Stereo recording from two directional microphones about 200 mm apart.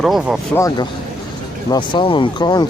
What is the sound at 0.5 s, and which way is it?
Speech, 15° left (ahead or behind).